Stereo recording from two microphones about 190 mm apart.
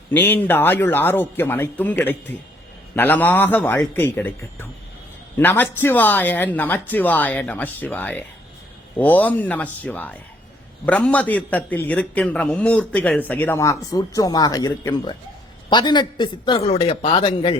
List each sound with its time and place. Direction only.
0.1 s speech: 10° left (ahead or behind); by 17.6 s 25° left (ahead or behind)